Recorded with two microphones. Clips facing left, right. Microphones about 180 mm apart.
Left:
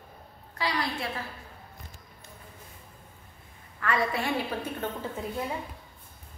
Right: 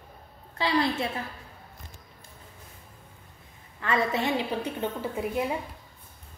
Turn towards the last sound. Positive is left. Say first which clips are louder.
# right 4 dB
turn(degrees=-15)  # may be behind; listen again after turning